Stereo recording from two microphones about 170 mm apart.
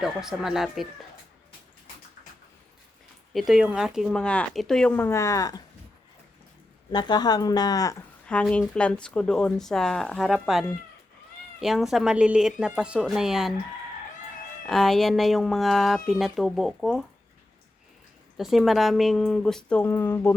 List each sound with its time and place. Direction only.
0.0 s speech: 5° right (ahead or behind)
3.3 s speech: centre (ahead or behind); by 5.6 s 20° left (ahead or behind)
6.9 s speech: 25° left (ahead or behind)
8.3 s speech: 5° left (ahead or behind)
14.7 s speech: centre (ahead or behind)
18.3 s speech: centre (ahead or behind)